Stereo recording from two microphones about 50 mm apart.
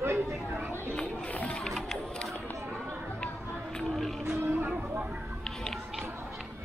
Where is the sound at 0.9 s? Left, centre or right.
Left.